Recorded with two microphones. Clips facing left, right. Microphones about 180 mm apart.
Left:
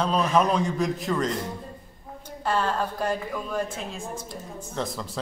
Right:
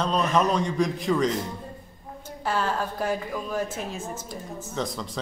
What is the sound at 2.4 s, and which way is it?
A woman's voice, 5° right (ahead or behind).